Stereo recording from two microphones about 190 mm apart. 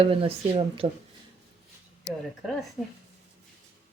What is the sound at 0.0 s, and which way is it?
Speech, 30° right (ahead or behind).